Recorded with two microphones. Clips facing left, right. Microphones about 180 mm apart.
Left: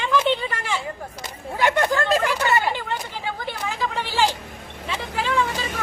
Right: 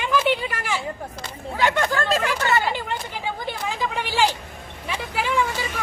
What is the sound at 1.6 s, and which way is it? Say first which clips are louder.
Speech: left 1 dB; 15° left (ahead or behind).